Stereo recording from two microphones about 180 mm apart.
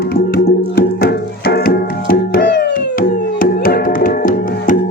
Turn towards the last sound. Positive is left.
turn(degrees=50)  # may be behind; listen again after turning